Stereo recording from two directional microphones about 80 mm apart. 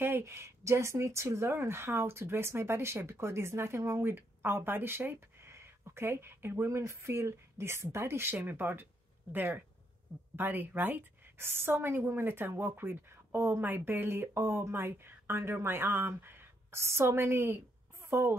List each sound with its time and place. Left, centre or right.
0.0 s speech: right
10.3 s a woman's voice: right